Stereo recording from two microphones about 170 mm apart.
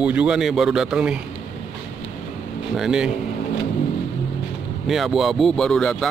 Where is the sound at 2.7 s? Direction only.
5° right (ahead or behind).